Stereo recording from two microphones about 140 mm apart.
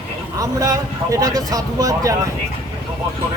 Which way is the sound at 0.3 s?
25° right (ahead or behind).